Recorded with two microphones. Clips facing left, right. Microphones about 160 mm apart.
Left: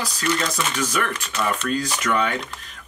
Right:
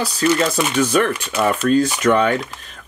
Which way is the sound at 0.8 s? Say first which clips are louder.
Right 11 dB; 30° right (ahead or behind).